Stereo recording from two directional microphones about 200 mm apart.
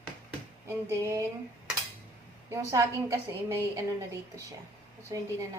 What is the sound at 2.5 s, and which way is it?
A woman's voice, 15° right (ahead or behind).